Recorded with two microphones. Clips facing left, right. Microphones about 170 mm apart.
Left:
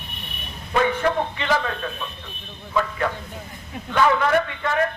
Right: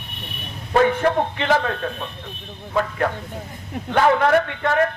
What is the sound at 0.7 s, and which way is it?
A man's voice, 45° right (ahead or behind).